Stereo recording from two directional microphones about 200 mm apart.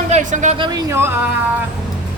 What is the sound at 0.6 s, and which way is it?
Speech, 20° right (ahead or behind).